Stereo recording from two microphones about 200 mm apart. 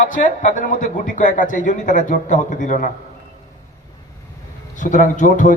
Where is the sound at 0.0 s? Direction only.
40° left (ahead or behind).